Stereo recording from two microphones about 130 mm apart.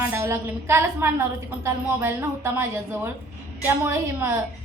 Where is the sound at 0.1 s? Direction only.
20° right (ahead or behind).